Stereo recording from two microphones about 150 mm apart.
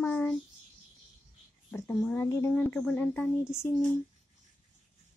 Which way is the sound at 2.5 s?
10° left (ahead or behind).